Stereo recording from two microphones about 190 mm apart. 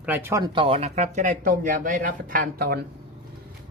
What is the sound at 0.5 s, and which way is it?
Speech, 30° right (ahead or behind).